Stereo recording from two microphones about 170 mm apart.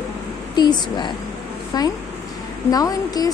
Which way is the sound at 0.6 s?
25° left (ahead or behind).